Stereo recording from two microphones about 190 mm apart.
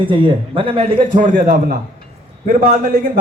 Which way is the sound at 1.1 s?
45° right (ahead or behind).